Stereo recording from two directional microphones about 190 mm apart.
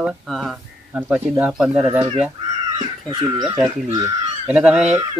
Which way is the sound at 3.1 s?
20° right (ahead or behind).